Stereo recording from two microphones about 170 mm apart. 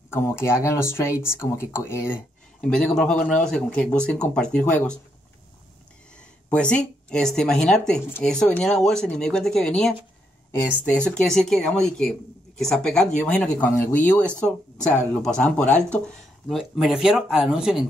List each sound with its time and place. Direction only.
0.1 s speech: 15° left (ahead or behind)
6.1 s speech: 5° left (ahead or behind)